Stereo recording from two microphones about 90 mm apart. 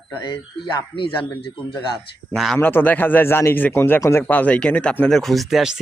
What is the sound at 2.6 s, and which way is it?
Speech, 25° left (ahead or behind).